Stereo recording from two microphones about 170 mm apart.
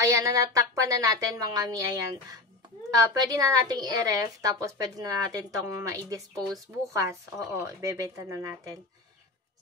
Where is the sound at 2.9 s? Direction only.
20° right (ahead or behind).